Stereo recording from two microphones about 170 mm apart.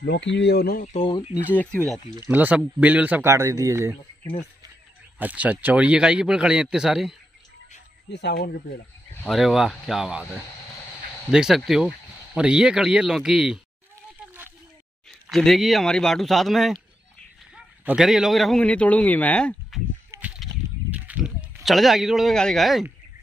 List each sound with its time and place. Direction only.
0.0 s speech: 85° left; by 0.8 s 65° left (ahead or behind)
0.9 s speech: 25° left (ahead or behind)
1.5 s a man's voice: 10° left (ahead or behind)
2.1 s speech: 15° right (ahead or behind)
5.2 s speech: 10° right (ahead or behind)
8.1 s speech: 80° left
9.3 s speech: centre (ahead or behind)
15.0 s speech: centre (ahead or behind)
17.8 s a man's voice: 5° right (ahead or behind)
20.1 s a sound: 10° right (ahead or behind)